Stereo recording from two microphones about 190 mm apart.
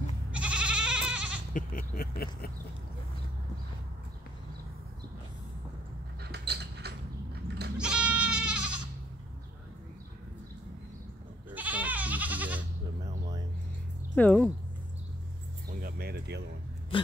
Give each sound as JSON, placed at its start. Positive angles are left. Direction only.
{"t": 0.3, "sound": "goat", "side_deg": -5}
{"t": 1.5, "sound": "speech", "side_deg": 50}
{"t": 6.2, "sound": "a sound", "side_deg": -60}
{"t": 7.7, "sound": "goat", "side_deg": -5}
{"t": 11.5, "sound": "goat", "side_deg": -10}
{"t": 14.1, "sound": "speech", "side_deg": 5}
{"t": 15.8, "sound": "a sound", "side_deg": -55}
{"t": 16.9, "sound": "dog", "side_deg": 25}